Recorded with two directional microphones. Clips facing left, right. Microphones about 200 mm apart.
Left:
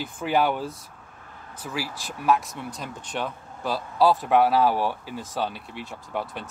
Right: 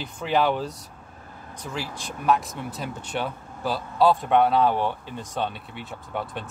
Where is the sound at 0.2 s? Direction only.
5° left (ahead or behind).